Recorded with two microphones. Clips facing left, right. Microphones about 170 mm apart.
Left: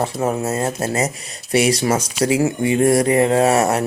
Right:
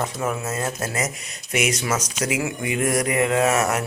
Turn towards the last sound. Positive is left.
turn(degrees=35)  # may be behind; listen again after turning